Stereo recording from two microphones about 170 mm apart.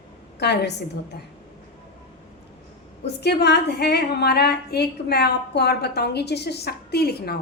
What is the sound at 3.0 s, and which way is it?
A woman's voice, 80° left.